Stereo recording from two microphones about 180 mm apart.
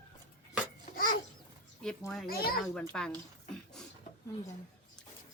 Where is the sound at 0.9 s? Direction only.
50° left (ahead or behind).